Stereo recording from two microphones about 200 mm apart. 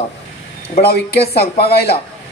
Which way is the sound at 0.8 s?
50° left (ahead or behind).